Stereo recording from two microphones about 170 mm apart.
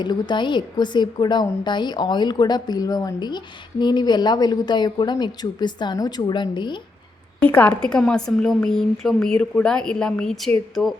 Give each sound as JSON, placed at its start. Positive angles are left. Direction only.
{"t": 0.0, "sound": "a woman's voice", "side_deg": 25}
{"t": 7.3, "sound": "a woman's voice", "side_deg": 10}